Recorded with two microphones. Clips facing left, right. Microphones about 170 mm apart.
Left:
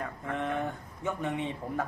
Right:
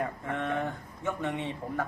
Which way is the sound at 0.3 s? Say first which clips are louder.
Even; 15° left (ahead or behind).